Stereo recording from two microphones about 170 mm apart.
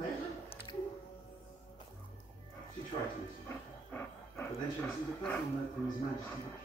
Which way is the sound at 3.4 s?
15° left (ahead or behind).